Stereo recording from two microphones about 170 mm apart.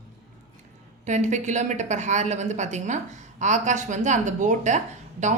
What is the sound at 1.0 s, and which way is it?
A woman's voice, 45° right (ahead or behind).